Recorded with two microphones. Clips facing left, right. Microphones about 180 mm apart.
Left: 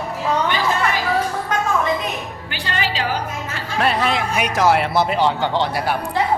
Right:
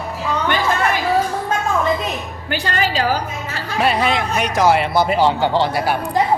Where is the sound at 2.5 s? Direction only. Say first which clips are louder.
Right 5 dB; 45° right (ahead or behind).